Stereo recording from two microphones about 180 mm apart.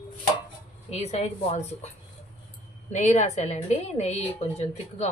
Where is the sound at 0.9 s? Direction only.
35° left (ahead or behind).